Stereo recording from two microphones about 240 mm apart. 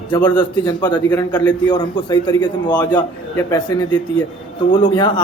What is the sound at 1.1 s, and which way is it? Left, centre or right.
Speech, centre.